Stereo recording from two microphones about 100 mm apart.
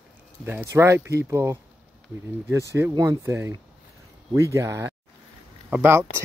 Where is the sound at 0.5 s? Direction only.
25° right (ahead or behind).